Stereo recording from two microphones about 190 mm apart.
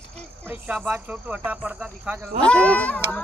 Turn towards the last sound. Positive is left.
turn(degrees=5)  # may be behind; listen again after turning